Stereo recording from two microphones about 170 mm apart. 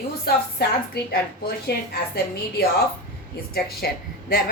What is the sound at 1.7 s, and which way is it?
Speech, 75° left (ahead or behind).